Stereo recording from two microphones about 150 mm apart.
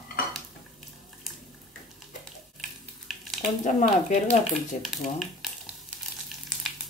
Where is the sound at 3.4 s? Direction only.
60° left (ahead or behind).